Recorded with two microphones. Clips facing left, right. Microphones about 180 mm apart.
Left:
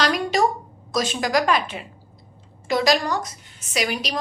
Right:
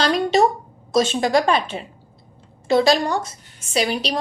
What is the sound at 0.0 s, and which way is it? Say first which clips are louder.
A woman's voice: right 3 dB; 25° right (ahead or behind).